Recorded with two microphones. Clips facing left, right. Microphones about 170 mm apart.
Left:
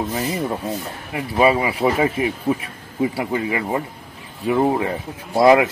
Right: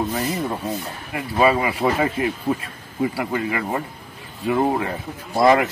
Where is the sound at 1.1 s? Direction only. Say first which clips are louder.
Left 1 dB; 20° left (ahead or behind).